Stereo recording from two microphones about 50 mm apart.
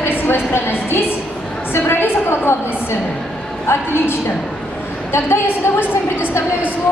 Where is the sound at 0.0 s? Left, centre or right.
Left.